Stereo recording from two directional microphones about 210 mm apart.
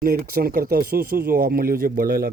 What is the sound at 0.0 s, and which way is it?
Speech, 45° right (ahead or behind).